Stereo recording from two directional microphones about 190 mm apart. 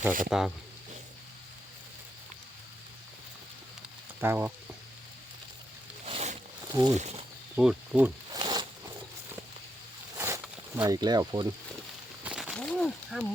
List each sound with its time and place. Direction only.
0.3 s speech: centre (ahead or behind)
4.2 s speech: 10° right (ahead or behind)
6.1 s a sound: 35° right (ahead or behind)
6.7 s speech: 20° right (ahead or behind)
7.0 s speech: 35° right (ahead or behind)
7.5 s speech: 5° right (ahead or behind)
8.3 s zipper: 20° right (ahead or behind)
10.2 s zipper: 15° right (ahead or behind)
12.2 s a sound: 5° right (ahead or behind)